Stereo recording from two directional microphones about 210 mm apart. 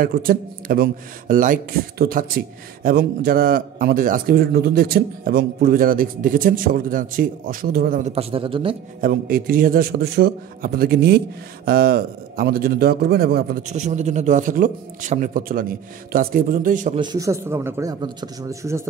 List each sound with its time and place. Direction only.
0.0 s a man's voice: 45° right (ahead or behind); by 8.7 s 25° right (ahead or behind)
9.0 s a man's voice: 45° right (ahead or behind)
17.0 s speech: 15° right (ahead or behind)